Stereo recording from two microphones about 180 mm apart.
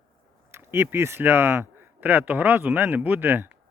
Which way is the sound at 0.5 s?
15° right (ahead or behind).